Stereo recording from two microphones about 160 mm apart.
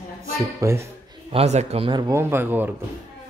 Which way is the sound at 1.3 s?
40° right (ahead or behind).